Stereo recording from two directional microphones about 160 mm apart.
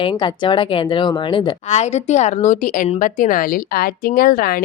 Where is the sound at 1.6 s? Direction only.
45° left (ahead or behind).